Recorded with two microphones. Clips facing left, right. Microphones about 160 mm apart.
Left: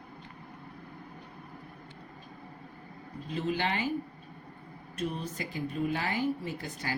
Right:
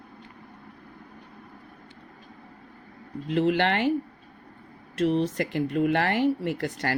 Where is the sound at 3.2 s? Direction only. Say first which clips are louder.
Right 9 dB; 70° right (ahead or behind).